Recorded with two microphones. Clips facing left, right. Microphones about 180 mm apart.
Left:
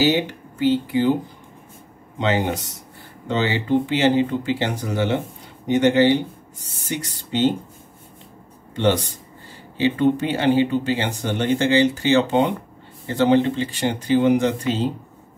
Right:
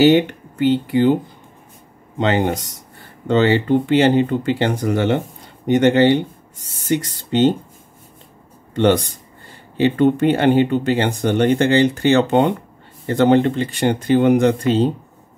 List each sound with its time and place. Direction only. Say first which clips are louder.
0.0 s speech: right 7 dB; 60° right (ahead or behind)
2.1 s speech: right 3 dB; 60° right (ahead or behind)
9.8 s speech: right 4 dB; 55° right (ahead or behind)